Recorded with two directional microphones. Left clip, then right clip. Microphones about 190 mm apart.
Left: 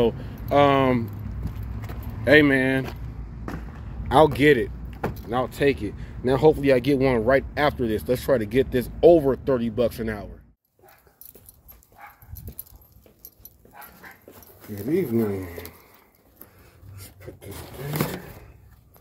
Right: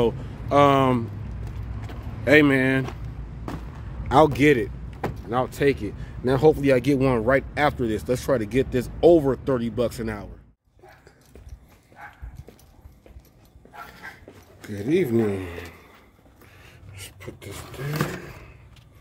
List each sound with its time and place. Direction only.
0.0 s speech: 10° right (ahead or behind)
2.2 s speech: 10° right (ahead or behind)
4.1 s speech: 10° right (ahead or behind)
14.7 s speech: 30° right (ahead or behind)
17.0 s filing: 50° right (ahead or behind)